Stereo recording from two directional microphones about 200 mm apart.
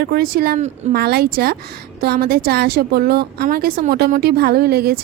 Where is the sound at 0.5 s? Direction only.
35° right (ahead or behind).